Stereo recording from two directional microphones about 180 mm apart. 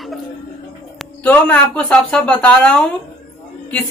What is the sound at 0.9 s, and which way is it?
A woman's voice, 10° left (ahead or behind).